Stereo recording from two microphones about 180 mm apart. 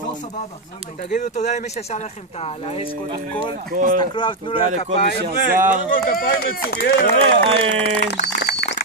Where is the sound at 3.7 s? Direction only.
50° right (ahead or behind).